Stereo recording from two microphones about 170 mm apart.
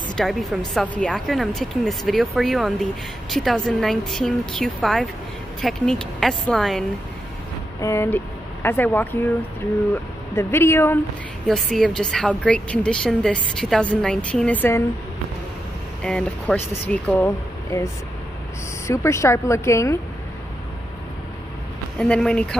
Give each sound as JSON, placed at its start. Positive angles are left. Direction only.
{"t": 0.1, "sound": "a woman's voice", "side_deg": 0}
{"t": 7.8, "sound": "speech", "side_deg": 15}
{"t": 10.3, "sound": "speech", "side_deg": 15}
{"t": 11.4, "sound": "speech", "side_deg": 0}
{"t": 16.0, "sound": "speech", "side_deg": 5}
{"t": 18.9, "sound": "speech", "side_deg": 15}
{"t": 21.9, "sound": "speech", "side_deg": 5}